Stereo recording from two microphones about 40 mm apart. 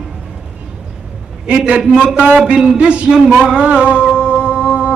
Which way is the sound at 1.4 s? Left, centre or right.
Right.